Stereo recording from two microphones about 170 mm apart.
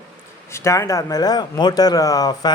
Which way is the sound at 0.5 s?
15° left (ahead or behind).